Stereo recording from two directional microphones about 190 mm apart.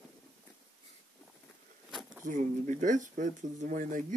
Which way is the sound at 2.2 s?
40° right (ahead or behind).